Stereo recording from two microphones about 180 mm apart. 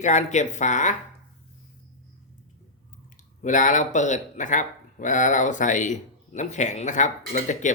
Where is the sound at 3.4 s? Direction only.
45° left (ahead or behind).